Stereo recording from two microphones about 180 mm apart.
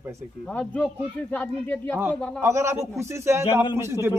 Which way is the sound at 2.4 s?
15° right (ahead or behind).